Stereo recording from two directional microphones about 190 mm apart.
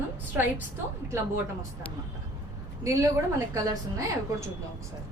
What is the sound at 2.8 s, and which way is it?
A woman's voice, 15° right (ahead or behind).